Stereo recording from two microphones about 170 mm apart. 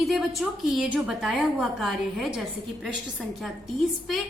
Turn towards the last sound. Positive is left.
turn(degrees=0)  # may be behind; listen again after turning